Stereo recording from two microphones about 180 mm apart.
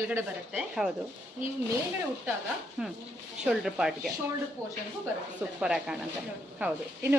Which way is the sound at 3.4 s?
5° right (ahead or behind).